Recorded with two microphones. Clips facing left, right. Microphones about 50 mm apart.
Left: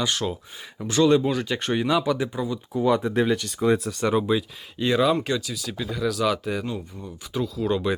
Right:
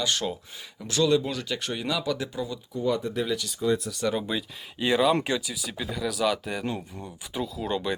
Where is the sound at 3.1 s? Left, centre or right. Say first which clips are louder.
Left 6 dB; left.